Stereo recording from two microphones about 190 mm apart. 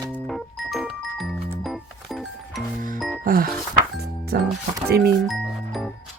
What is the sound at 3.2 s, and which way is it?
Music, 50° right (ahead or behind).